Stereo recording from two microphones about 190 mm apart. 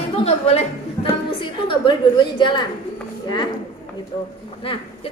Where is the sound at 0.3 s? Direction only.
35° left (ahead or behind).